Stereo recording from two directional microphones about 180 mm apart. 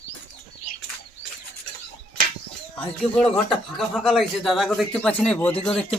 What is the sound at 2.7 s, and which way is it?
Speech, 5° left (ahead or behind).